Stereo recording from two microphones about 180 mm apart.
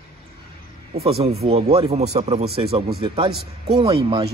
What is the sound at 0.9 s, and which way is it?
Speech, 35° right (ahead or behind).